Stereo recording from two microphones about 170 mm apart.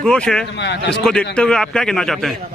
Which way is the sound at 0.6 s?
90° left.